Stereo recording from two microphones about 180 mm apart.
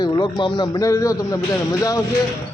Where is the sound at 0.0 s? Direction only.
25° left (ahead or behind).